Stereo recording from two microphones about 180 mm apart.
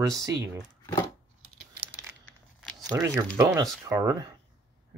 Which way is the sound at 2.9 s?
15° right (ahead or behind).